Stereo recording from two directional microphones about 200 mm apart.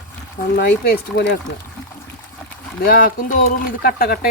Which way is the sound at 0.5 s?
50° left (ahead or behind).